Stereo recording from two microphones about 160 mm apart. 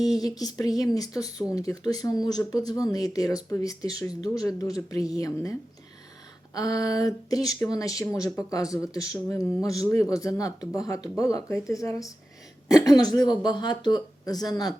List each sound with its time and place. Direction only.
0.0 s speech: 25° left (ahead or behind)